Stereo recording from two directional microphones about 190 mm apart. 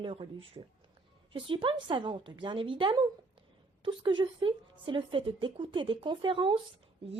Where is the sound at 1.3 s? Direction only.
25° right (ahead or behind).